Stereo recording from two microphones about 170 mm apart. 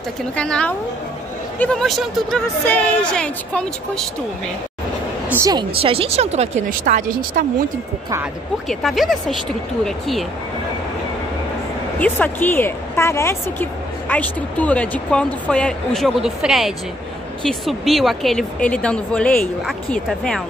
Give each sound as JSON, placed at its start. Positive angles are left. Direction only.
{"t": 0.4, "sound": "a woman's voice", "side_deg": 5}
{"t": 5.3, "sound": "speech", "side_deg": -20}
{"t": 6.8, "sound": "speech", "side_deg": -50}
{"t": 8.6, "sound": "speech", "side_deg": 0}
{"t": 12.0, "sound": "a woman's voice", "side_deg": 10}